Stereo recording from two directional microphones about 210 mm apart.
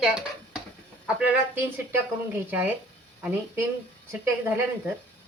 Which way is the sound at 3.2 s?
10° right (ahead or behind).